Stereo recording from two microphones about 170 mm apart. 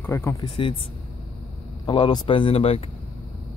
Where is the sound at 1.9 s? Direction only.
30° left (ahead or behind).